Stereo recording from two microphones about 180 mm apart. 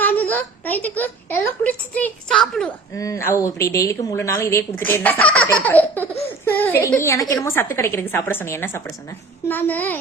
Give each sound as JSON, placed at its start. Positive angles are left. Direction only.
{"t": 0.0, "sound": "a woman's voice", "side_deg": 10}
{"t": 2.9, "sound": "a woman's voice", "side_deg": 15}